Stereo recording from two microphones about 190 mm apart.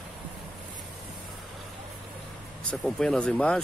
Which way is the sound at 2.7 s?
5° left (ahead or behind).